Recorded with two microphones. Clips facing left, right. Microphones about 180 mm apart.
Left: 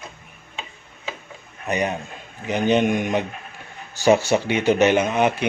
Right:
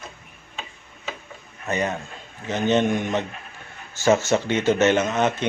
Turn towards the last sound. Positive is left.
turn(degrees=10)  # may be behind; listen again after turning